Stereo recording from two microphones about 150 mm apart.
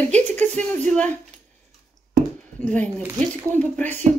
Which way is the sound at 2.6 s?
10° left (ahead or behind).